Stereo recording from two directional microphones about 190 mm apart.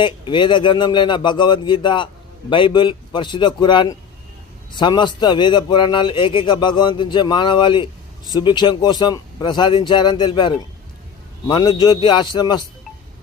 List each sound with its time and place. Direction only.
0.0 s a man's voice: 25° left (ahead or behind)